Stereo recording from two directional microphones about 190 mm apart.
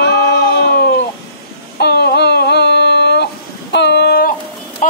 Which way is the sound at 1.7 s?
60° left (ahead or behind).